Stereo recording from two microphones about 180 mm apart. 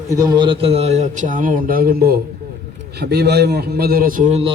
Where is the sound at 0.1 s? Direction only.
20° right (ahead or behind).